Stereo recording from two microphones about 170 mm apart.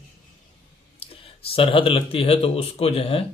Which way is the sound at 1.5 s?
30° left (ahead or behind).